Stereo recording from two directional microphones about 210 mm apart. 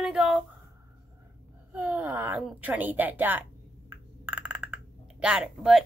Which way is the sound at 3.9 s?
10° right (ahead or behind).